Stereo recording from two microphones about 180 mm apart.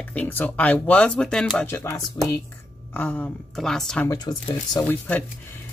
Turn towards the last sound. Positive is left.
turn(degrees=20)  # may be behind; listen again after turning